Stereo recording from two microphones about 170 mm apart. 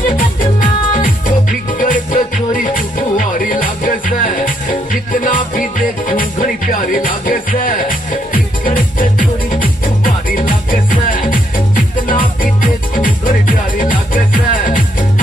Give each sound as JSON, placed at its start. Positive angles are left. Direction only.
{"t": 0.0, "sound": "music", "side_deg": 55}